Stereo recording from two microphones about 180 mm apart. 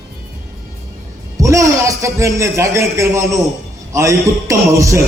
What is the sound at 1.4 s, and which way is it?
A man's voice, 15° right (ahead or behind).